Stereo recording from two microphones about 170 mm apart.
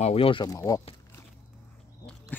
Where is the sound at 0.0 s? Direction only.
35° left (ahead or behind).